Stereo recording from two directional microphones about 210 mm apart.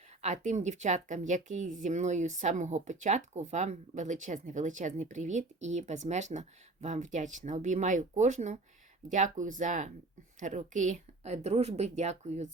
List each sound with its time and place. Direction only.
0.2 s speech: 35° right (ahead or behind)